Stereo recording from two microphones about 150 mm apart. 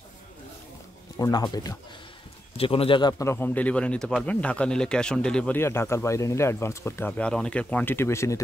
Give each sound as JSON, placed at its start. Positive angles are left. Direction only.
{"t": 1.1, "sound": "speech", "side_deg": 25}
{"t": 2.5, "sound": "a man's voice", "side_deg": 40}